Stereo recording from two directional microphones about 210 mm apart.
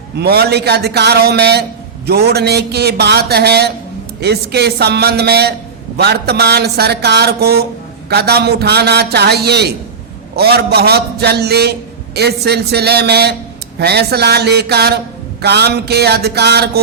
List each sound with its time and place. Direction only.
0.2 s speech: 50° right (ahead or behind)